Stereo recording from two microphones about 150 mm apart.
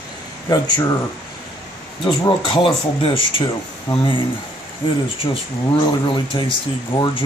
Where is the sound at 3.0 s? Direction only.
35° left (ahead or behind).